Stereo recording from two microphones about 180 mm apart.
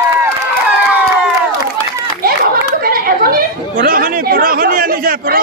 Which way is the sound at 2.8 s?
55° right (ahead or behind).